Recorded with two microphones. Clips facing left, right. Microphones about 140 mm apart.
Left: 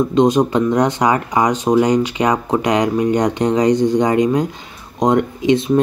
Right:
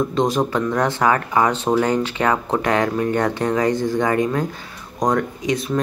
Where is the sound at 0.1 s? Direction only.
20° left (ahead or behind).